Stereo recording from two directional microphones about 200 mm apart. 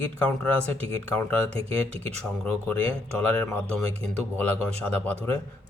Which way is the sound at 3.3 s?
5° left (ahead or behind).